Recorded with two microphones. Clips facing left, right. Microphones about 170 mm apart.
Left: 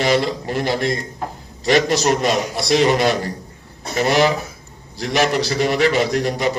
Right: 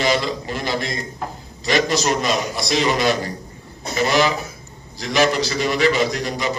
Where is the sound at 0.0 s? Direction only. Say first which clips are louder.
Left 3 dB; 60° left (ahead or behind).